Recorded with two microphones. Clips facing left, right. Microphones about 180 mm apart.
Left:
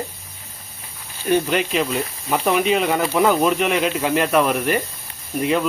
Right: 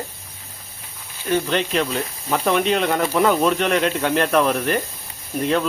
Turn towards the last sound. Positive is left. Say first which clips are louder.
# left 1 dB
turn(degrees=5)  # may be behind; listen again after turning